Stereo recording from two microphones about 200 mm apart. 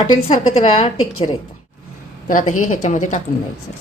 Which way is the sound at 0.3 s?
35° left (ahead or behind).